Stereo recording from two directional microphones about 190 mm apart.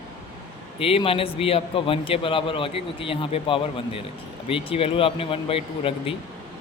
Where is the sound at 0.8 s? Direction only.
30° left (ahead or behind).